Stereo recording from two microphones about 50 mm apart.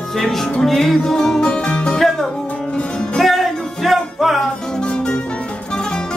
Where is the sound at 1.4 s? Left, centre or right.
Left.